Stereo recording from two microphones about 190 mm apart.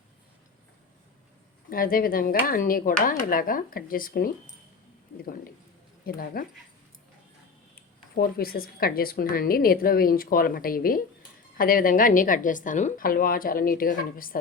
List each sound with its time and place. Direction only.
1.7 s speech: 50° left (ahead or behind)
6.1 s speech: 50° left (ahead or behind)
7.8 s speech: 50° left (ahead or behind)